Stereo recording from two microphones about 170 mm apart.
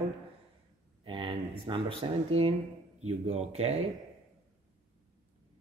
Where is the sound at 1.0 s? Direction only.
30° right (ahead or behind).